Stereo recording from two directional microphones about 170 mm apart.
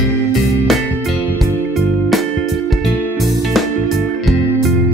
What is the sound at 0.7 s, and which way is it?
Music, centre (ahead or behind).